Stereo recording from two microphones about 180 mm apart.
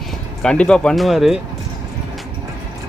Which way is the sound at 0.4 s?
5° left (ahead or behind).